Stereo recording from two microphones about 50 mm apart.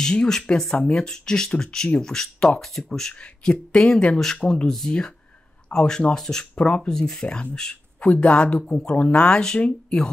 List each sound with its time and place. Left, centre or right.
0.0 s speech: centre
3.7 s speech: centre
8.0 s speech: left